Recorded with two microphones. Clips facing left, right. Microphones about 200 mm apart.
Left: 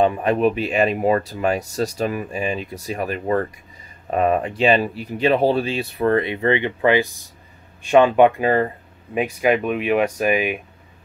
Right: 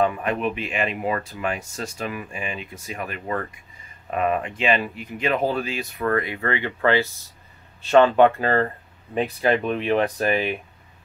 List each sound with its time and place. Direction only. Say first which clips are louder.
0.0 s speech: left 5 dB; 35° left (ahead or behind); by 10.6 s 10° left (ahead or behind)